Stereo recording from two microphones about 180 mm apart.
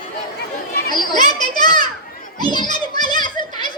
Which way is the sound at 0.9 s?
25° left (ahead or behind).